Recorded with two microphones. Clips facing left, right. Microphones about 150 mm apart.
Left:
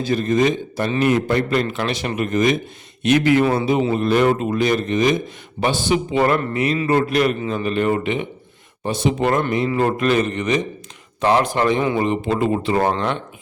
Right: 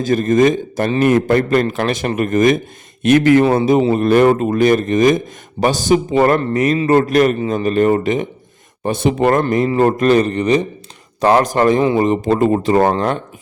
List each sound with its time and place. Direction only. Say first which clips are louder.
0.0 s a man's voice: right 5 dB; 45° right (ahead or behind)
8.8 s a man's voice: right 4 dB; 50° right (ahead or behind)